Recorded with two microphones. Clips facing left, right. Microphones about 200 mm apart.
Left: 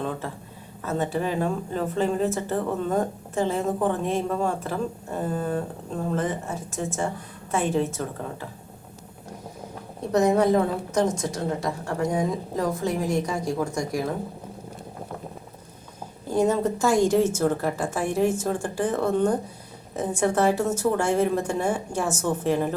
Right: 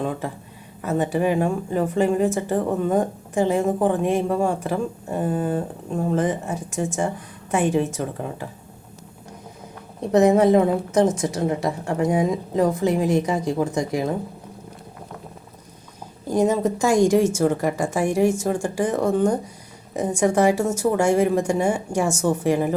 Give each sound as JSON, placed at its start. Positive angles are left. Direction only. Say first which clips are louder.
{"t": 0.8, "sound": "a woman's voice", "louder": "right 5 dB", "side_deg": -15}
{"t": 10.1, "sound": "a woman's voice", "louder": "right 4 dB", "side_deg": -20}
{"t": 16.3, "sound": "a woman's voice", "louder": "right 2 dB", "side_deg": -10}